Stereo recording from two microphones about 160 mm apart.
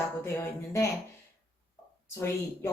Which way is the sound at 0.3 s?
20° left (ahead or behind).